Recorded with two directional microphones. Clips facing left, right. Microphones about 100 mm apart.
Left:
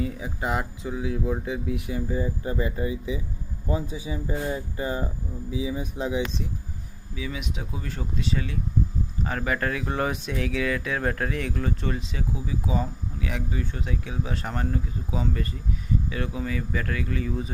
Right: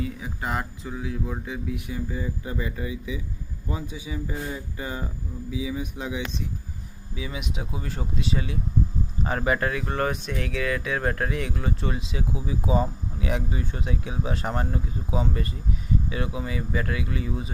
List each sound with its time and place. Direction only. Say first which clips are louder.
0.4 s speech: left 2 dB; 15° left (ahead or behind)
7.2 s speech: even; 15° right (ahead or behind)
9.6 s speech: right 1 dB; centre (ahead or behind)